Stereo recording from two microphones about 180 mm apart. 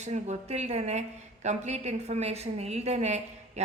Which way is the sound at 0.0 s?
40° right (ahead or behind).